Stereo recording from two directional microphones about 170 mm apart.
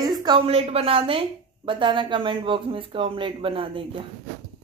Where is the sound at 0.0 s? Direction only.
25° right (ahead or behind).